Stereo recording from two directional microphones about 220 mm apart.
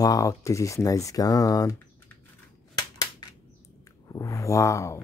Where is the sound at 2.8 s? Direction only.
15° left (ahead or behind).